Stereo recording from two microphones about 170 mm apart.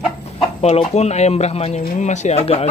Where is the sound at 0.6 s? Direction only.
40° left (ahead or behind).